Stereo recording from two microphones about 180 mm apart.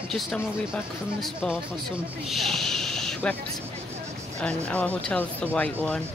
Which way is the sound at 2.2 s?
Centre (ahead or behind).